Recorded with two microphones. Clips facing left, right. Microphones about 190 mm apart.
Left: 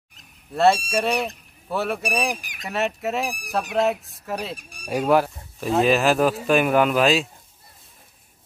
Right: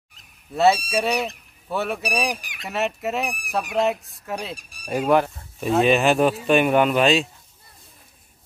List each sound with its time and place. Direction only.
0.5 s speech: centre (ahead or behind)